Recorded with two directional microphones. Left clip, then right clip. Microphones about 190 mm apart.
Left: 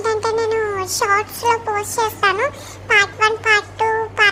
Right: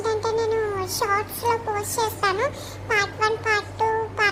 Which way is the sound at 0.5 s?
15° left (ahead or behind).